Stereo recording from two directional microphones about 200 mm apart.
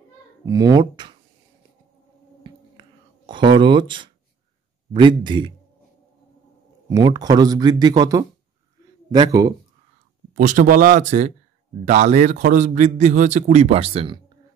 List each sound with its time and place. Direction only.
0.5 s speech: 20° right (ahead or behind)
2.4 s whispering: 25° right (ahead or behind)
4.9 s speech: 25° right (ahead or behind)
6.9 s speech: 20° right (ahead or behind)
10.3 s a man's voice: 40° right (ahead or behind)